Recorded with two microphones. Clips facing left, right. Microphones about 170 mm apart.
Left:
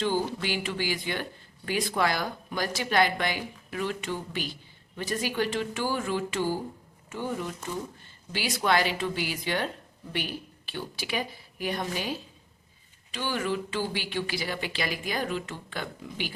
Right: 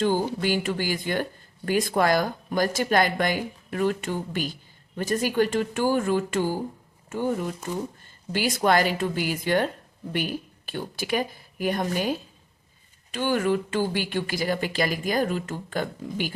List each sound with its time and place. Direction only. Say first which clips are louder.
0.0 s speech: right 4 dB; 45° right (ahead or behind)
10.7 s speech: right 6 dB; 50° right (ahead or behind)